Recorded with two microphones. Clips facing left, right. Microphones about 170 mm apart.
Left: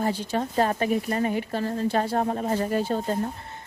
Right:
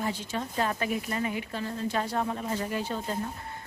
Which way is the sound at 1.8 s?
30° left (ahead or behind).